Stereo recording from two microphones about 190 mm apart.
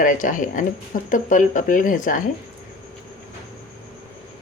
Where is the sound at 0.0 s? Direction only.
45° left (ahead or behind).